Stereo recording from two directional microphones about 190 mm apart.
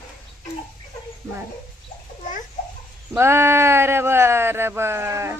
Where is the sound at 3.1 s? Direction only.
15° right (ahead or behind).